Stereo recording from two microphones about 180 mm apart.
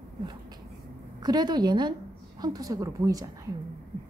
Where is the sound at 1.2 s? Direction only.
20° right (ahead or behind).